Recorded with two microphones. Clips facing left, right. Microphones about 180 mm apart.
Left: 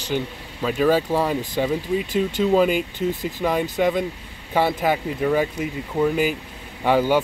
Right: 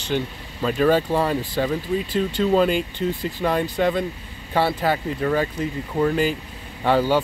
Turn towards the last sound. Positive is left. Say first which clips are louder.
# left 1 dB
turn(degrees=15)  # may be behind; listen again after turning